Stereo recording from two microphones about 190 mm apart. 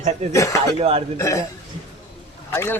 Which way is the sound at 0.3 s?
15° left (ahead or behind).